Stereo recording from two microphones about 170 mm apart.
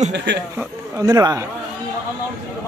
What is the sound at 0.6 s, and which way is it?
Speech, 20° right (ahead or behind).